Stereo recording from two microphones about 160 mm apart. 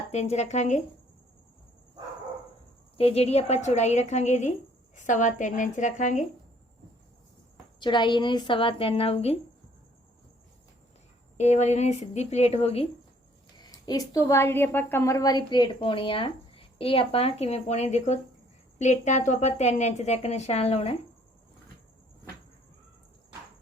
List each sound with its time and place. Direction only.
0.1 s speech: 45° left (ahead or behind)
3.0 s speech: 40° left (ahead or behind)
7.8 s a woman's voice: 30° left (ahead or behind)
11.3 s speech: 45° left (ahead or behind)
13.6 s a sound: 25° left (ahead or behind)
14.3 s a woman's voice: 15° left (ahead or behind); by 20.9 s 40° left (ahead or behind)